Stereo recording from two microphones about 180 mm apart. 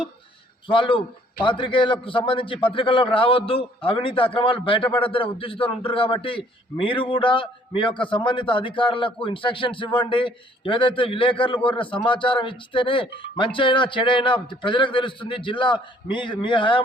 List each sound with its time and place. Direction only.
0.7 s a man's voice: 30° left (ahead or behind)